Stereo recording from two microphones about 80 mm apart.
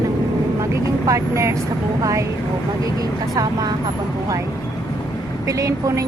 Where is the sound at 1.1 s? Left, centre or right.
Right.